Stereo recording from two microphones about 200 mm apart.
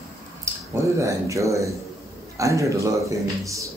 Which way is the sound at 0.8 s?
15° right (ahead or behind).